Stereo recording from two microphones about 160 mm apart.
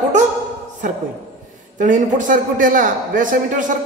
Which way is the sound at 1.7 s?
50° right (ahead or behind).